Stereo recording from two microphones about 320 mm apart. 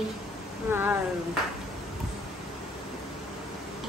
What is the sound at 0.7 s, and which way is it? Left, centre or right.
Speech, centre.